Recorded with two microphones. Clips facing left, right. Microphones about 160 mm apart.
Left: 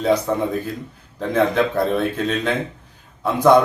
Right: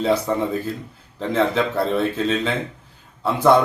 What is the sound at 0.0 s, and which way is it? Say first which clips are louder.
A man's voice: left 1 dB; centre (ahead or behind).